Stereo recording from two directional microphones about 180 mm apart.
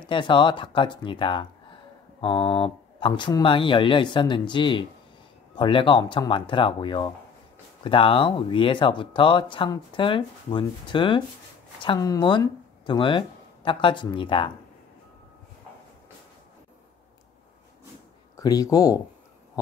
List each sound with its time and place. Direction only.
0.0 s speech: 25° left (ahead or behind)
18.3 s speech: 20° left (ahead or behind)